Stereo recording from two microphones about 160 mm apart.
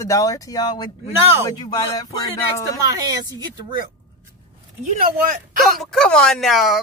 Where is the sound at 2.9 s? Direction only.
25° right (ahead or behind).